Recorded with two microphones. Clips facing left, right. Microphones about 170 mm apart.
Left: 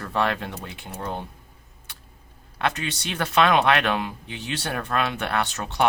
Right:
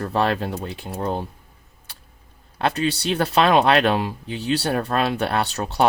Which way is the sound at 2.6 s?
35° right (ahead or behind).